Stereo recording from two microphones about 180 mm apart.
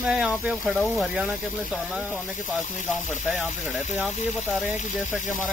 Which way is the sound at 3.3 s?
Centre (ahead or behind).